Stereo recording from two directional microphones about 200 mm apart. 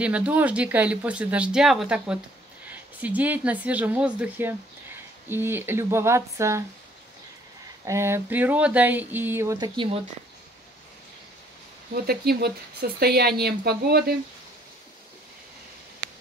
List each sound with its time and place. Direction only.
0.0 s speech: 5° right (ahead or behind)
7.8 s speech: 15° right (ahead or behind)
9.8 s speech: 30° right (ahead or behind)
11.9 s speech: 50° right (ahead or behind)